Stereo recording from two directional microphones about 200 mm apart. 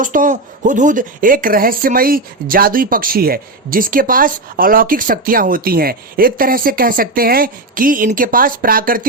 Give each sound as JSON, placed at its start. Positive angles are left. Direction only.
{"t": 0.0, "sound": "speech", "side_deg": -40}